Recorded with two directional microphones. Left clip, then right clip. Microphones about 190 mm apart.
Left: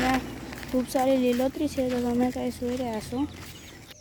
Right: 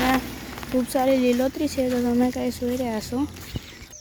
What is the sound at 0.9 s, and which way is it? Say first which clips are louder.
Speech: right 3 dB; 5° right (ahead or behind).